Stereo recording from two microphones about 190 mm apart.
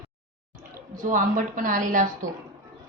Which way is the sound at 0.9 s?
45° right (ahead or behind).